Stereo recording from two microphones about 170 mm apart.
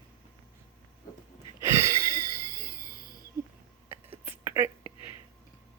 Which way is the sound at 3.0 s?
60° right (ahead or behind).